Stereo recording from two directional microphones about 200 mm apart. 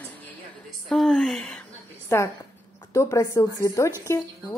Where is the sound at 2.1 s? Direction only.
15° left (ahead or behind).